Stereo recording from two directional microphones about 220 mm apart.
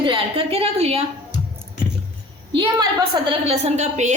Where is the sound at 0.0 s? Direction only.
25° right (ahead or behind).